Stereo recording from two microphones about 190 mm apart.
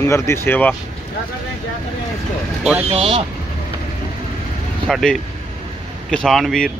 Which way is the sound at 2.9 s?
30° right (ahead or behind).